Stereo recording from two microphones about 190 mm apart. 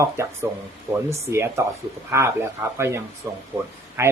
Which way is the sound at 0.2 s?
15° right (ahead or behind).